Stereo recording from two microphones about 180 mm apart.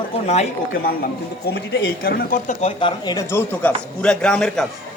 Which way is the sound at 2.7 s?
30° left (ahead or behind).